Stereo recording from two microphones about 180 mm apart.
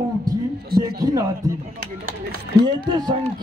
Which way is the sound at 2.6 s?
25° right (ahead or behind).